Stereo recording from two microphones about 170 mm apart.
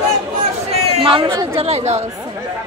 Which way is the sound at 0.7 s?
35° right (ahead or behind).